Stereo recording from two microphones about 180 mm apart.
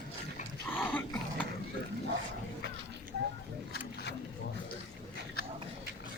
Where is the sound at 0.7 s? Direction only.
10° left (ahead or behind).